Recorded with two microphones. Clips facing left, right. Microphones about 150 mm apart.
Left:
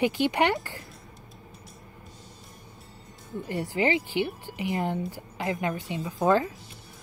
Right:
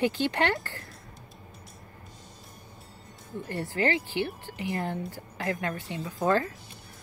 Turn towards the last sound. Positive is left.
turn(degrees=20)  # may be behind; listen again after turning